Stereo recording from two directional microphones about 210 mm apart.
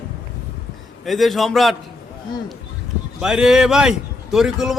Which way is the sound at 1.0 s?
Centre (ahead or behind).